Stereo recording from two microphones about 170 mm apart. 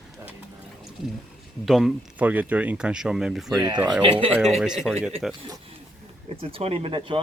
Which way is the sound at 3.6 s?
25° right (ahead or behind).